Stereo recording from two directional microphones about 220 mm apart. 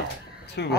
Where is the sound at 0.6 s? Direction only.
50° left (ahead or behind).